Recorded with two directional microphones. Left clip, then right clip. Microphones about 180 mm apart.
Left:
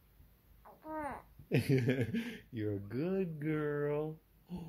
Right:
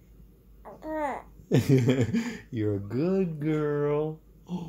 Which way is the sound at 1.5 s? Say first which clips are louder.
Right 9 dB; 15° right (ahead or behind).